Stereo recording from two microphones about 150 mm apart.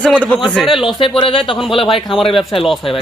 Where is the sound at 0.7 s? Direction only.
35° left (ahead or behind).